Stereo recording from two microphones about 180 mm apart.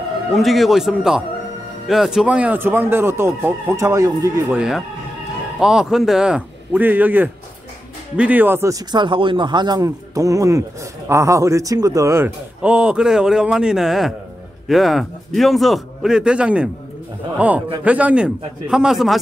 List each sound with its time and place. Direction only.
0.3 s a man's voice: centre (ahead or behind); by 4.6 s 20° right (ahead or behind)
4.6 s a man's voice: centre (ahead or behind)